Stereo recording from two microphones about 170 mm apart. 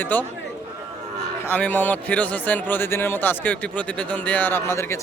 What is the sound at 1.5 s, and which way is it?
A man's voice, 10° left (ahead or behind).